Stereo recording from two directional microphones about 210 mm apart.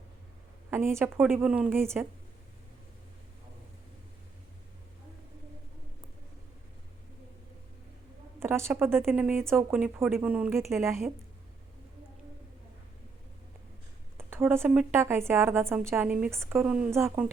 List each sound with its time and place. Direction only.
0.7 s speech: 10° right (ahead or behind)
8.4 s speech: 10° right (ahead or behind)
14.2 s a woman's voice: 10° right (ahead or behind)